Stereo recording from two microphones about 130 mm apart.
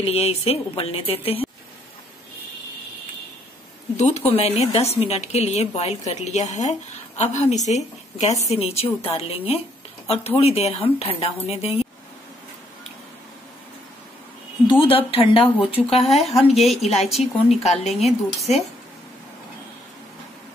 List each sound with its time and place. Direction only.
0.0 s speech: 50° left (ahead or behind)
3.9 s a woman's voice: 60° left (ahead or behind)
14.7 s speech: 45° left (ahead or behind)
16.0 s a woman's voice: centre (ahead or behind)